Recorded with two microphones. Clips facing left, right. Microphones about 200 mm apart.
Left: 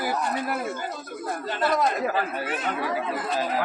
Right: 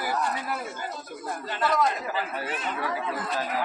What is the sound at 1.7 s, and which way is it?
Speech, 50° left (ahead or behind).